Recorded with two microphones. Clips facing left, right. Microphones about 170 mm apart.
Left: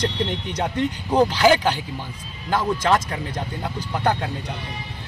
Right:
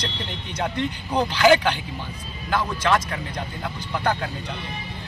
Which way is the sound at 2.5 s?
35° left (ahead or behind).